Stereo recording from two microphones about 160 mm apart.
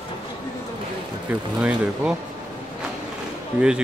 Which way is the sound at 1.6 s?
5° right (ahead or behind).